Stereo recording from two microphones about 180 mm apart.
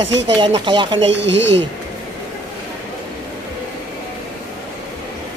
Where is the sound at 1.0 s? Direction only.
85° right.